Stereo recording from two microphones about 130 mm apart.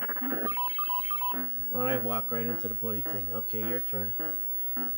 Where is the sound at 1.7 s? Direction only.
35° left (ahead or behind).